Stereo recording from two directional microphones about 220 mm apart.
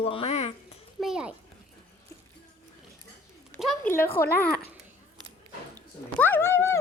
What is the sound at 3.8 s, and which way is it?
Speech, 10° left (ahead or behind).